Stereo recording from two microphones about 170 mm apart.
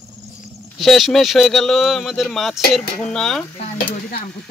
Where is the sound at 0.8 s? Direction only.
Centre (ahead or behind).